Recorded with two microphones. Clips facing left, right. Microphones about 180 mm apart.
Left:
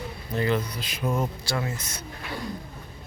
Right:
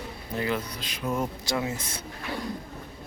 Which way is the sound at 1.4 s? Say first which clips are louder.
Right 1 dB; 15° right (ahead or behind).